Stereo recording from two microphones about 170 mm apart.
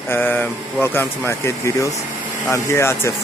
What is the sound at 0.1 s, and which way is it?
Speech, 10° left (ahead or behind).